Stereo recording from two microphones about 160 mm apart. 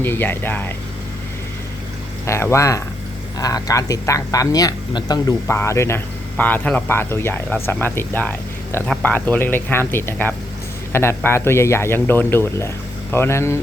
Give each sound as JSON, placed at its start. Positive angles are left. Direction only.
{"t": 0.0, "sound": "speech", "side_deg": 15}
{"t": 2.2, "sound": "speech", "side_deg": 15}